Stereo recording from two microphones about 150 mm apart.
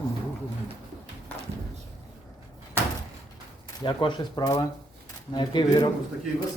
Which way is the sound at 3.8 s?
35° left (ahead or behind).